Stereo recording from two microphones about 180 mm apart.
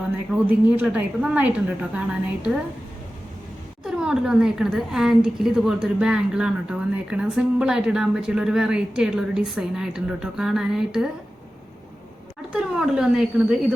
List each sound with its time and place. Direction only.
0.3 s a woman's voice: 10° right (ahead or behind)
3.8 s a woman's voice: 5° right (ahead or behind)
12.5 s a woman's voice: 5° right (ahead or behind)